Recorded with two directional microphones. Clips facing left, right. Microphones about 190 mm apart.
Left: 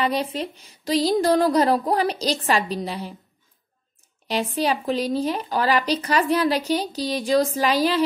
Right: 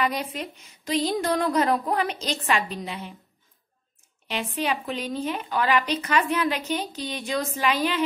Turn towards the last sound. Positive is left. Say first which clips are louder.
# left 4 dB
turn(degrees=35)  # may be behind; listen again after turning